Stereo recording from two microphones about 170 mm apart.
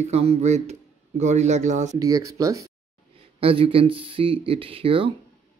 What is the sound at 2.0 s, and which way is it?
Speech, 20° right (ahead or behind).